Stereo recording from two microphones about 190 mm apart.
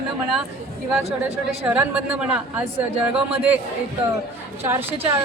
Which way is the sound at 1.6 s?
10° right (ahead or behind).